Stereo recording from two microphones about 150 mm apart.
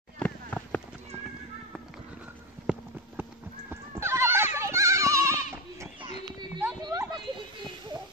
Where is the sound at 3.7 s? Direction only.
15° right (ahead or behind).